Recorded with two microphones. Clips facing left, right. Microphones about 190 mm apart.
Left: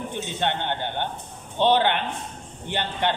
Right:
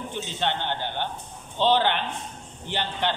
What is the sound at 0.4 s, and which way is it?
Speech, 55° left (ahead or behind).